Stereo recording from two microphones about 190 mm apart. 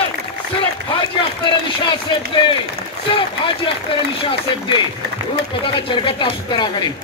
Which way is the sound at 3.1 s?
30° left (ahead or behind).